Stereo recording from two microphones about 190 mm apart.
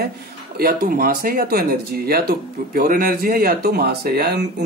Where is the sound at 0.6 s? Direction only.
50° right (ahead or behind).